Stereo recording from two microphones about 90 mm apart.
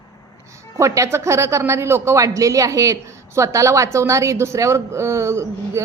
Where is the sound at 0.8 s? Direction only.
35° right (ahead or behind).